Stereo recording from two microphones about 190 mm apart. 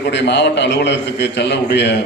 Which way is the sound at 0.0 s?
65° left (ahead or behind).